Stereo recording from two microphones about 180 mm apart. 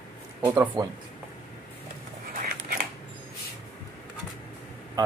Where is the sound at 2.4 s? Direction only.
55° right (ahead or behind).